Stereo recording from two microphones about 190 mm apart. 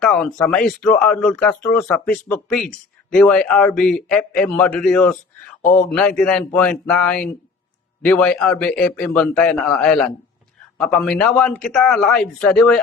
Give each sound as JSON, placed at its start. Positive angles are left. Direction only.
{"t": 0.0, "sound": "speech", "side_deg": 5}
{"t": 5.6, "sound": "speech", "side_deg": 45}
{"t": 6.0, "sound": "speech", "side_deg": 5}